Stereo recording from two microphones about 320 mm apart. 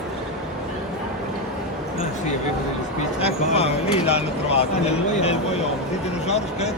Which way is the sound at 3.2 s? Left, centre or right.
Centre.